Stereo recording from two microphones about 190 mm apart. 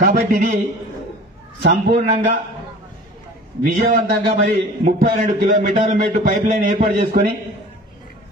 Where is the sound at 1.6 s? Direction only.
50° right (ahead or behind).